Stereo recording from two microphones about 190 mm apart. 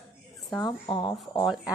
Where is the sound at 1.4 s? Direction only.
Centre (ahead or behind).